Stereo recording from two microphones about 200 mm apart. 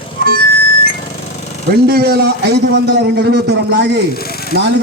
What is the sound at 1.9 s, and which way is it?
A man's voice, 50° right (ahead or behind).